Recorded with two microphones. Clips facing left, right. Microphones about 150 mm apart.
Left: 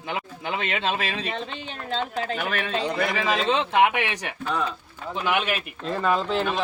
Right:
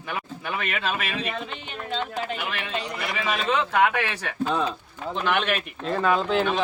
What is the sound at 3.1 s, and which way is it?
Speech, 30° left (ahead or behind).